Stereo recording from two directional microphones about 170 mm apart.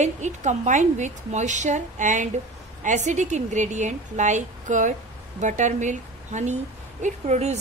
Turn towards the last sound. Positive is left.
turn(degrees=-40)  # may be behind; listen again after turning